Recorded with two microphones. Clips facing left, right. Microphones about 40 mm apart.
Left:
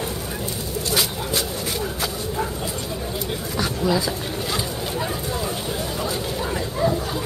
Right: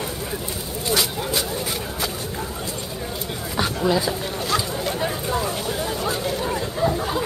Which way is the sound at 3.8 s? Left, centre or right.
Centre.